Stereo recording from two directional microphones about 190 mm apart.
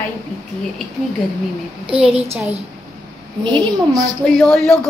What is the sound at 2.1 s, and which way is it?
Speech, 30° right (ahead or behind).